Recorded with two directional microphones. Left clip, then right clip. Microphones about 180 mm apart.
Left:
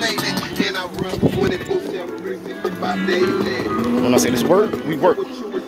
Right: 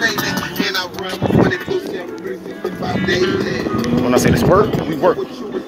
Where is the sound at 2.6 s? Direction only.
50° right (ahead or behind).